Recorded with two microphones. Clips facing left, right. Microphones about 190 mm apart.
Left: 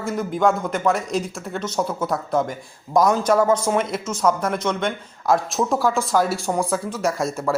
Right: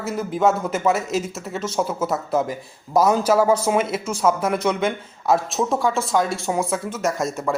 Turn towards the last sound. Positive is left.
turn(degrees=0)  # may be behind; listen again after turning